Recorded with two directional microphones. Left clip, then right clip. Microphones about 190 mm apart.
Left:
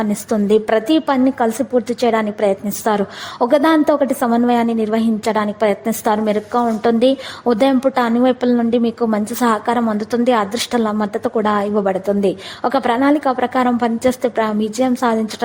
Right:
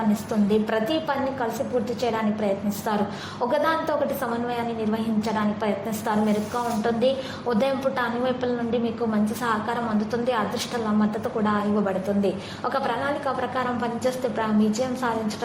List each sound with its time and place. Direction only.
0.3 s a woman's voice: 45° left (ahead or behind)